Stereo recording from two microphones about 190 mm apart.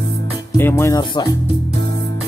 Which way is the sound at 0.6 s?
10° left (ahead or behind).